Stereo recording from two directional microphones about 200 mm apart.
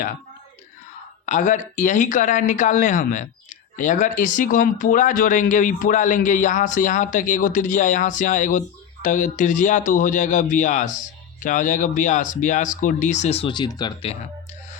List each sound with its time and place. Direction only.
1.2 s speech: 40° left (ahead or behind)